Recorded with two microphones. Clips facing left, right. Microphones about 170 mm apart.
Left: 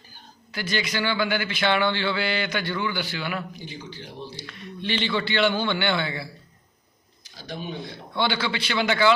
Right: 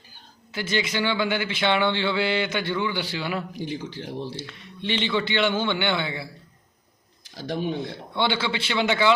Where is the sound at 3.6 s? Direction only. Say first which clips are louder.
Right 7 dB; 85° right.